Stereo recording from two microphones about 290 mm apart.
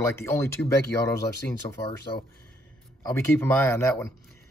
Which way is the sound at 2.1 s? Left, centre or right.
Centre.